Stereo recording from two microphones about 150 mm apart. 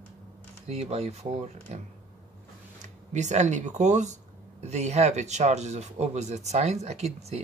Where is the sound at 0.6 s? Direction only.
45° right (ahead or behind).